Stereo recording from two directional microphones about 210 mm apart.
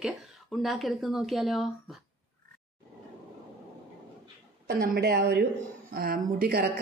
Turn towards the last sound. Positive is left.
turn(degrees=-45)  # may be behind; listen again after turning